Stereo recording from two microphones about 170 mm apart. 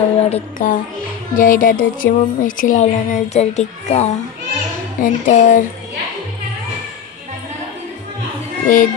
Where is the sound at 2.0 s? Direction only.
90° left.